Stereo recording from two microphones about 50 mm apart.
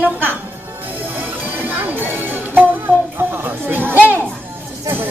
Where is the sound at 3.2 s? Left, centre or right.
Right.